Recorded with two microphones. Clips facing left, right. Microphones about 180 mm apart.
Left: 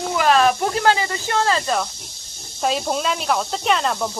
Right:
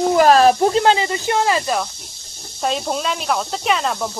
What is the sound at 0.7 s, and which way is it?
Speech, 20° right (ahead or behind).